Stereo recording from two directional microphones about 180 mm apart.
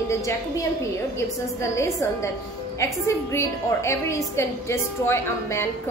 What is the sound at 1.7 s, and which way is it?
A woman's voice, 15° left (ahead or behind).